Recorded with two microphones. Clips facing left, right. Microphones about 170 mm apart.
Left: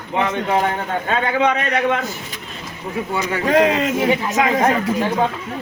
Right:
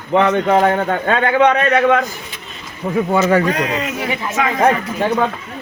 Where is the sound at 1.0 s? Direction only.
60° right (ahead or behind).